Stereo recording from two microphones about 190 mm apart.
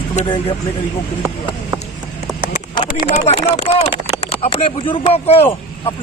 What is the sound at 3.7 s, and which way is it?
Speech, 35° left (ahead or behind).